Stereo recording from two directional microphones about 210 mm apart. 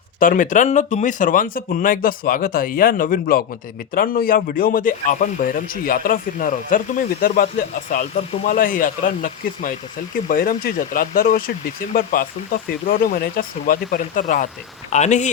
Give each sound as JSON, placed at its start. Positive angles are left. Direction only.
{"t": 0.2, "sound": "a man's voice", "side_deg": 40}